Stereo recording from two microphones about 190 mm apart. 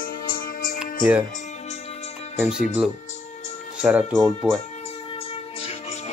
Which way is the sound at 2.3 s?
5° right (ahead or behind).